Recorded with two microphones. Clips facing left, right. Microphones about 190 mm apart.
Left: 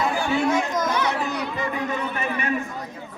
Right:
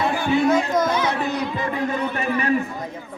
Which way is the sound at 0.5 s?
30° right (ahead or behind).